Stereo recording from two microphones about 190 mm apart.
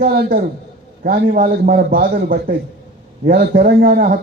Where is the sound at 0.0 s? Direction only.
50° right (ahead or behind).